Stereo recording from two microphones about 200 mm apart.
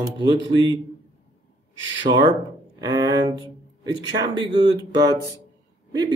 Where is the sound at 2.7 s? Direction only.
20° right (ahead or behind).